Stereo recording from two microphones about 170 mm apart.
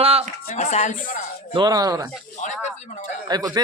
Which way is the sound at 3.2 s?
25° right (ahead or behind).